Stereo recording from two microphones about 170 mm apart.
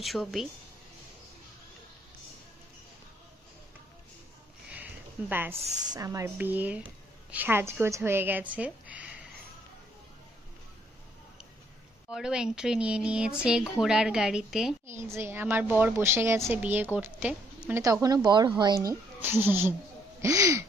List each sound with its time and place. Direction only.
0.0 s a woman's voice: centre (ahead or behind)
4.6 s a sound: 10° right (ahead or behind)
5.9 s a woman's voice: 20° right (ahead or behind)
12.1 s a woman's voice: 5° right (ahead or behind)
14.9 s a woman's voice: 15° right (ahead or behind)
18.0 s speech: 25° right (ahead or behind)
19.1 s a woman's voice: 10° right (ahead or behind)